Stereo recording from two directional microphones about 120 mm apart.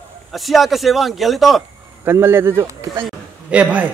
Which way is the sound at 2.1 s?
20° right (ahead or behind).